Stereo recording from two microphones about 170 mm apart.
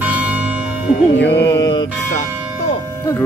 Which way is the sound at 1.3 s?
90° left.